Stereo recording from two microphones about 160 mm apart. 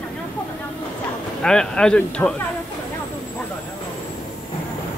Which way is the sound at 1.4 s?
5° left (ahead or behind).